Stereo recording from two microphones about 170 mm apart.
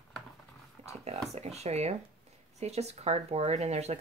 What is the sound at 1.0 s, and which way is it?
Speech, 40° right (ahead or behind).